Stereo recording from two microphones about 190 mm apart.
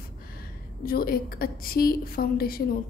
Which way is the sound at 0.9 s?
50° left (ahead or behind).